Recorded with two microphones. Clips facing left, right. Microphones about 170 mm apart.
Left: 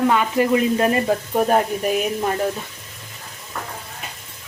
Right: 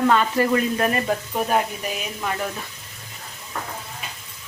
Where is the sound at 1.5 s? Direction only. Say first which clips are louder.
Left 4 dB; 45° left (ahead or behind).